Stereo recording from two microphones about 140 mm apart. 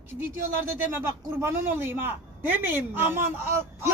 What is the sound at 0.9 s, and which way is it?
A man's voice, 15° right (ahead or behind).